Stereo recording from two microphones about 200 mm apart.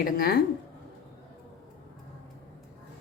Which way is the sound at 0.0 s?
50° left (ahead or behind).